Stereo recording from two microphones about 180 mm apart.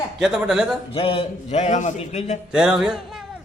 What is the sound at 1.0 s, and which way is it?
Speech, 30° left (ahead or behind).